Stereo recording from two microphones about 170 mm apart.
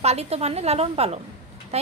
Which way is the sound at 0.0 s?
40° right (ahead or behind).